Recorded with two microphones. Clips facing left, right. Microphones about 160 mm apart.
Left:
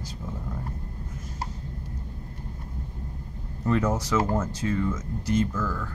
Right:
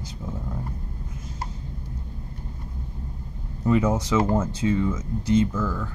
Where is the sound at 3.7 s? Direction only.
10° right (ahead or behind).